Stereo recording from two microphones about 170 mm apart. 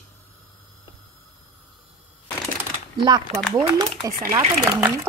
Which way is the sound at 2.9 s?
25° right (ahead or behind).